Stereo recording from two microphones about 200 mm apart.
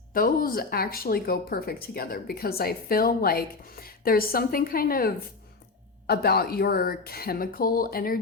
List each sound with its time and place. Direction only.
0.1 s speech: 45° left (ahead or behind)